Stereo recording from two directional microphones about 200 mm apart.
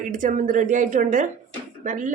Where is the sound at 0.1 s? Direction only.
40° right (ahead or behind).